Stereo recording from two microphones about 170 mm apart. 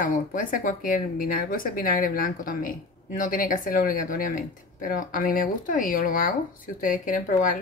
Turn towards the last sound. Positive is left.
turn(degrees=50)  # may be behind; listen again after turning